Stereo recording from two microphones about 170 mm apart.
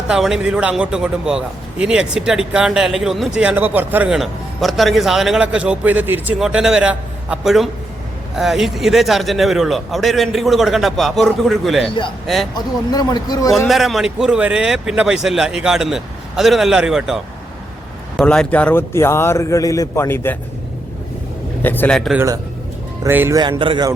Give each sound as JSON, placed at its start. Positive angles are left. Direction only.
{"t": 0.1, "sound": "a man's voice", "side_deg": -5}
{"t": 12.5, "sound": "speech", "side_deg": 20}
{"t": 13.5, "sound": "a man's voice", "side_deg": 0}
{"t": 18.2, "sound": "speech", "side_deg": 5}
{"t": 21.6, "sound": "a man's voice", "side_deg": 10}
{"t": 23.0, "sound": "speech", "side_deg": -15}
{"t": 23.4, "sound": "speech", "side_deg": -25}